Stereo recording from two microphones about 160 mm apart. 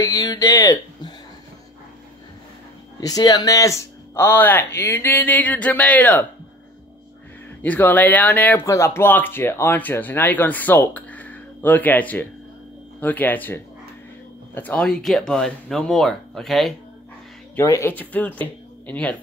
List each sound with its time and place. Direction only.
0.0 s a sound: 20° left (ahead or behind)
3.0 s speech: 25° left (ahead or behind)
7.6 s speech: 10° left (ahead or behind)
17.6 s speech: 15° left (ahead or behind)